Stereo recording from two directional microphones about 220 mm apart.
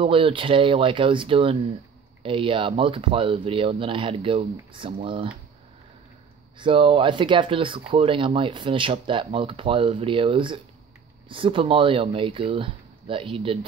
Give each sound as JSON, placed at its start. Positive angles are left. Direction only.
{"t": 0.0, "sound": "speech", "side_deg": -25}
{"t": 6.6, "sound": "speech", "side_deg": -25}